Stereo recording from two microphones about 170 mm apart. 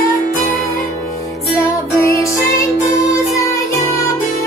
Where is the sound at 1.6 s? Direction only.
20° left (ahead or behind).